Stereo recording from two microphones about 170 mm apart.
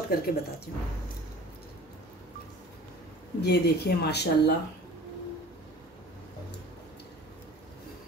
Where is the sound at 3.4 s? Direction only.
75° left (ahead or behind).